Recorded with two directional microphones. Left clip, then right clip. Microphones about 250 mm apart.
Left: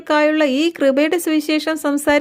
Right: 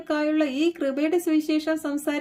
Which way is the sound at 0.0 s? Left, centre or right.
Left.